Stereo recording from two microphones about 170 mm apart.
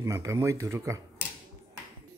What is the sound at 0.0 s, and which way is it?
Speech, 15° right (ahead or behind).